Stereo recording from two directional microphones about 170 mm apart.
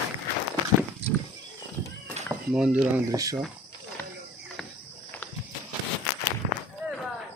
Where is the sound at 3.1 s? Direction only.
20° right (ahead or behind).